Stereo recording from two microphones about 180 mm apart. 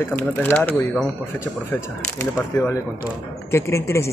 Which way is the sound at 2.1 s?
15° left (ahead or behind).